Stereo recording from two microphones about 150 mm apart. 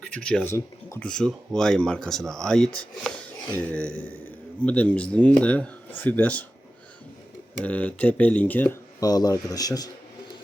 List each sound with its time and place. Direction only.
0.0 s speech: 5° left (ahead or behind)
0.5 s speech: 15° left (ahead or behind)
1.0 s speech: 5° left (ahead or behind)
7.6 s speech: 10° left (ahead or behind); by 9.9 s 25° left (ahead or behind)